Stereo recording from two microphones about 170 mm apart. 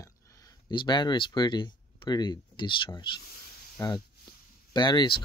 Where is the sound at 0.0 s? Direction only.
20° left (ahead or behind).